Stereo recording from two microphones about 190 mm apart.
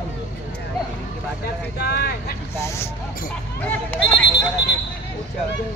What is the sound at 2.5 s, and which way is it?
Speech, 15° left (ahead or behind).